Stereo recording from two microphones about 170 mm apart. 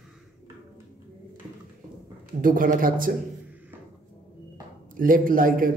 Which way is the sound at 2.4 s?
55° right (ahead or behind).